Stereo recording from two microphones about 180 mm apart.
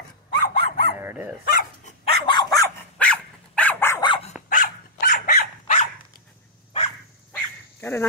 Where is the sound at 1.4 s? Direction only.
50° left (ahead or behind).